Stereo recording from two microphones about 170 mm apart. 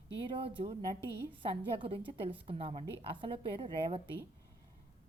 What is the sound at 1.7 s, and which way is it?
A woman's voice, 30° right (ahead or behind).